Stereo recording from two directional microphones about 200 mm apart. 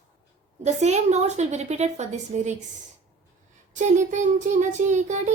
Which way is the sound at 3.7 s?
35° right (ahead or behind).